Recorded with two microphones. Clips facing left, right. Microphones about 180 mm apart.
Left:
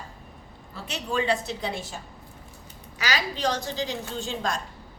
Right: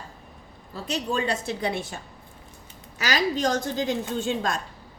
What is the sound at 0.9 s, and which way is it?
A woman's voice, 40° right (ahead or behind).